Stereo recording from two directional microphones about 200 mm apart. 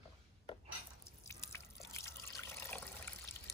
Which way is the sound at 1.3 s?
15° left (ahead or behind).